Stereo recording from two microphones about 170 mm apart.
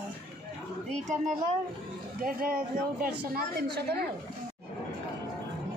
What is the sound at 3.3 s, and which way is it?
Speech, 75° right (ahead or behind).